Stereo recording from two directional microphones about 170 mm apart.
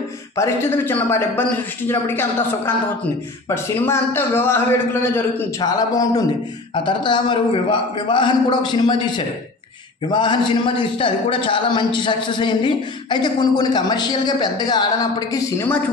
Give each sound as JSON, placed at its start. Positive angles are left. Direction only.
{"t": 0.4, "sound": "a man's voice", "side_deg": 15}